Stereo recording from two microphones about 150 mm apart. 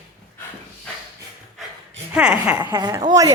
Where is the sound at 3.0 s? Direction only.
25° right (ahead or behind).